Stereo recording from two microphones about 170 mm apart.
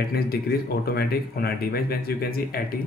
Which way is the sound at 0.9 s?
65° left (ahead or behind).